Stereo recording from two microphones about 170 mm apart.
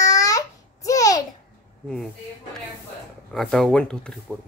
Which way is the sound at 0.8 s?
20° left (ahead or behind).